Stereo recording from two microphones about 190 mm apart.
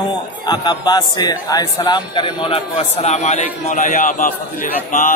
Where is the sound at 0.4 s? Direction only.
20° left (ahead or behind).